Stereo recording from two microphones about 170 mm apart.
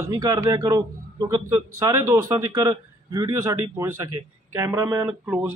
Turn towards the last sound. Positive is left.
turn(degrees=-5)  # may be behind; listen again after turning